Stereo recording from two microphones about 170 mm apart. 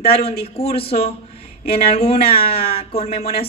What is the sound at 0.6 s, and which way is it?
Speech, 35° left (ahead or behind).